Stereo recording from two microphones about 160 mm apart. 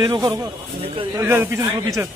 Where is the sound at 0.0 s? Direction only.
25° right (ahead or behind).